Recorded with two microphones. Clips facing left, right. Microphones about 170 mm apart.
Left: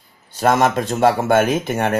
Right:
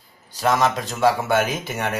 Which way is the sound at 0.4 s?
50° left (ahead or behind).